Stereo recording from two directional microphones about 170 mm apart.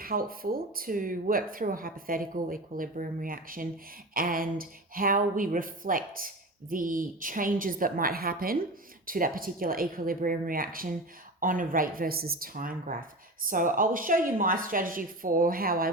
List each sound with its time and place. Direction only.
0.0 s speech: 60° right (ahead or behind)